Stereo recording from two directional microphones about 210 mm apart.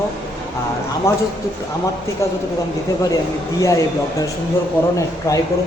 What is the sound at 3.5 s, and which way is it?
Speech, 15° left (ahead or behind).